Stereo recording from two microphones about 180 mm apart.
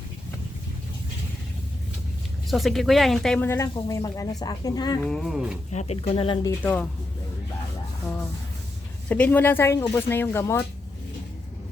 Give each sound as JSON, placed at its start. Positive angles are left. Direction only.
{"t": 2.5, "sound": "speech", "side_deg": 0}
{"t": 3.5, "sound": "speech", "side_deg": 15}
{"t": 5.0, "sound": "speech", "side_deg": 5}
{"t": 5.7, "sound": "speech", "side_deg": 35}
{"t": 6.6, "sound": "speech", "side_deg": 10}
{"t": 8.0, "sound": "a sound", "side_deg": 10}
{"t": 9.0, "sound": "speech", "side_deg": 10}